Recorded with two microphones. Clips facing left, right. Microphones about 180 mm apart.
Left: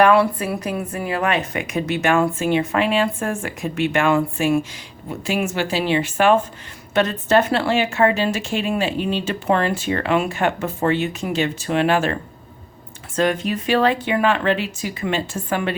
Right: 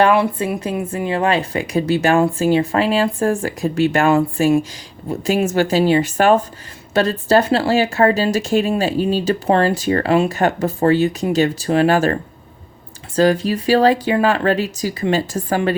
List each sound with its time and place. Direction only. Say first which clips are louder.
0.0 s a woman's voice: even; 25° right (ahead or behind); by 15.7 s 40° right (ahead or behind)